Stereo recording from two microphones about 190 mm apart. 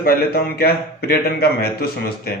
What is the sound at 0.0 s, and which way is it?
A man's voice, 55° left (ahead or behind).